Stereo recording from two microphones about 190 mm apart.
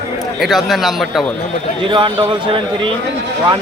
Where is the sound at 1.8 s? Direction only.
25° right (ahead or behind).